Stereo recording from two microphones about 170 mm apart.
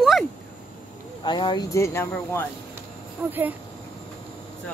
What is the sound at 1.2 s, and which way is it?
Speech, 25° left (ahead or behind).